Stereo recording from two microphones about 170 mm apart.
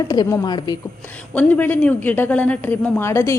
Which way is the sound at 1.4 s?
10° left (ahead or behind).